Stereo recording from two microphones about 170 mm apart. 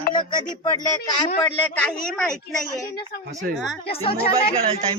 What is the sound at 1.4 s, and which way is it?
Speech, 10° left (ahead or behind).